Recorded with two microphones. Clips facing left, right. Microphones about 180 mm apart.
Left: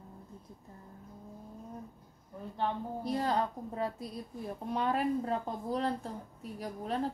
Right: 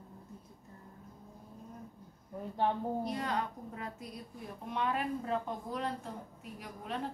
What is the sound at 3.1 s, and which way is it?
Speech, 35° left (ahead or behind).